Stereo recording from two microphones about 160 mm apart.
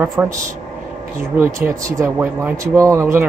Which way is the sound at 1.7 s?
20° right (ahead or behind).